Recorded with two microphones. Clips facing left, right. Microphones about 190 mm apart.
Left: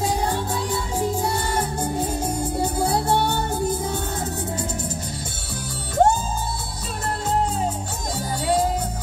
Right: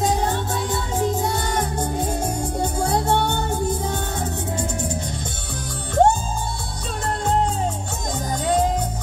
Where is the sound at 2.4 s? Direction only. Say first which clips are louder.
Left 1 dB; 5° left (ahead or behind).